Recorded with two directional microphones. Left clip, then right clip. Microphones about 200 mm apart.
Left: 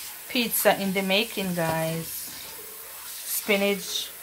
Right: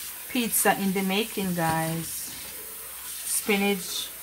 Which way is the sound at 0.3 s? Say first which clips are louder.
Left 2 dB; 15° left (ahead or behind).